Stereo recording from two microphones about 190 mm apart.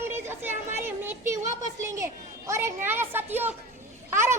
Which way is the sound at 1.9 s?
15° right (ahead or behind).